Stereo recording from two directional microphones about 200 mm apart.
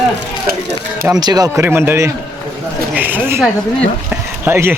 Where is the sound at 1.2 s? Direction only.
20° right (ahead or behind).